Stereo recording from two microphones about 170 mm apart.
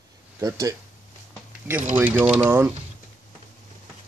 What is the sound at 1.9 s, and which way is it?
Speech, 10° right (ahead or behind).